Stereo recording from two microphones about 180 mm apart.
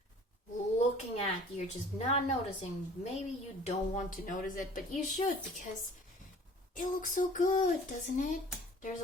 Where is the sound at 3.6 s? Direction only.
45° left (ahead or behind).